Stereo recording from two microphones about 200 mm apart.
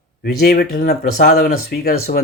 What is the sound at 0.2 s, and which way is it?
A man's voice, 50° left (ahead or behind).